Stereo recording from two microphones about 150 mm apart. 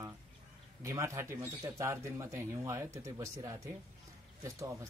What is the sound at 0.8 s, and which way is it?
A man's voice, 20° right (ahead or behind).